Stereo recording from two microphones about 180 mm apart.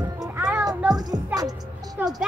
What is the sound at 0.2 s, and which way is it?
Music, 15° right (ahead or behind).